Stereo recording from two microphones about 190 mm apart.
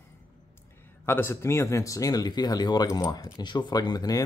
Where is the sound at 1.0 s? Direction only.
15° left (ahead or behind).